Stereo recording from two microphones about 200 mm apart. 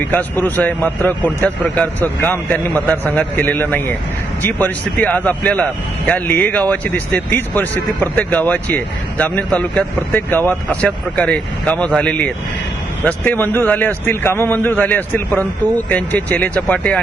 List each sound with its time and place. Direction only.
0.0 s speech: 10° left (ahead or behind)